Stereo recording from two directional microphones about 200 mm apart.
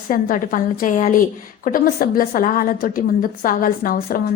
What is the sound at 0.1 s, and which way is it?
A woman's voice, 45° left (ahead or behind).